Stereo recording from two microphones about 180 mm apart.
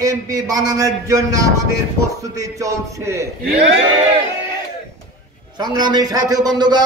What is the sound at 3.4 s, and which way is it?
Speech, 90° right.